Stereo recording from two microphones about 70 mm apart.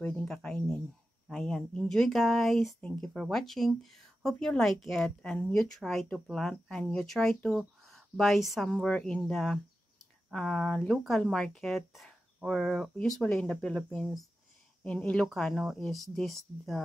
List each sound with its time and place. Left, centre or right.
0.0 s speech: centre
1.3 s speech: centre
8.6 s speech: centre
9.3 s speech: centre
13.2 s speech: centre